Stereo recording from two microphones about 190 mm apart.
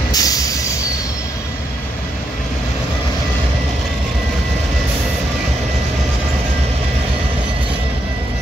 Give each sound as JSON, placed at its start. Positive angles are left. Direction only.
{"t": 0.1, "sound": "train", "side_deg": 20}